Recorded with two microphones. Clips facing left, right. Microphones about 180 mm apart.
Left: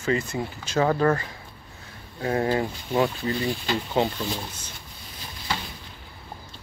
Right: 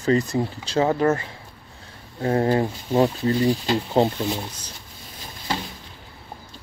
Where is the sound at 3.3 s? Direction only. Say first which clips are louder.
Right 6 dB; 40° right (ahead or behind).